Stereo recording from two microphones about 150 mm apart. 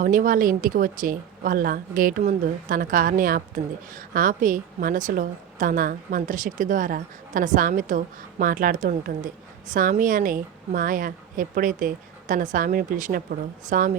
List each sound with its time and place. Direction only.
0.0 s speech: 65° right (ahead or behind)